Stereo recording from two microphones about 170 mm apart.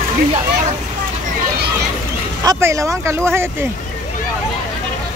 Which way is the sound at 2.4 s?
20° right (ahead or behind).